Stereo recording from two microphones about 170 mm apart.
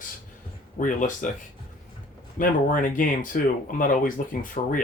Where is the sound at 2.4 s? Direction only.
50° left (ahead or behind).